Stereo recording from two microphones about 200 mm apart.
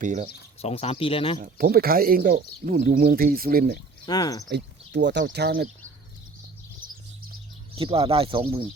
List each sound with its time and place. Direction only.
0.0 s speech: 40° right (ahead or behind)
0.6 s speech: 30° left (ahead or behind)
1.4 s speech: 50° right (ahead or behind)
4.0 s speech: 20° left (ahead or behind)
4.4 s speech: 60° right (ahead or behind)
7.8 s speech: 30° right (ahead or behind)